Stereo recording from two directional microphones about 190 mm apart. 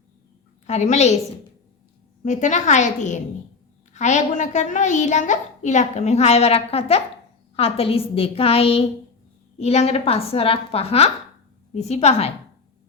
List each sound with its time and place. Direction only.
0.7 s a child's voice: 35° left (ahead or behind)
2.2 s a child's voice: 40° left (ahead or behind)